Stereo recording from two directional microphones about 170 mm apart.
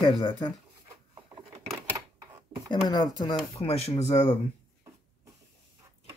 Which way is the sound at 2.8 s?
25° left (ahead or behind).